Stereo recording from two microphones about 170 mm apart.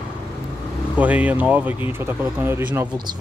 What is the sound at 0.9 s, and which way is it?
Speech, 10° right (ahead or behind).